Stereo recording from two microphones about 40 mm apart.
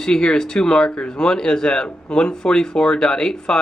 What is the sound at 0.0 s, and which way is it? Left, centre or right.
Speech, centre.